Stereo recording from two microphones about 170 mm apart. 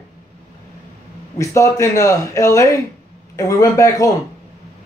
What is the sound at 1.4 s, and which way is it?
A man's voice, 20° left (ahead or behind).